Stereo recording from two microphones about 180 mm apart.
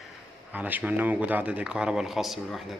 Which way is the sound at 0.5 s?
10° right (ahead or behind).